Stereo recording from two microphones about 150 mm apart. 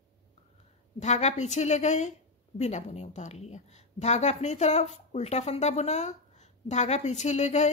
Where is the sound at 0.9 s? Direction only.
50° left (ahead or behind).